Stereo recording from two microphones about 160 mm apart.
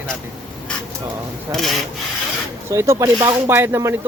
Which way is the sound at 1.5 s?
Centre (ahead or behind).